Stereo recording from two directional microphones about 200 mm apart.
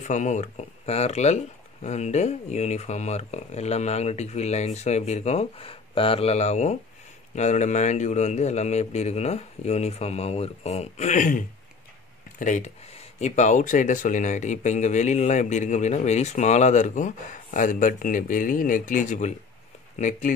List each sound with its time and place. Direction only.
0.0 s speech: 35° left (ahead or behind)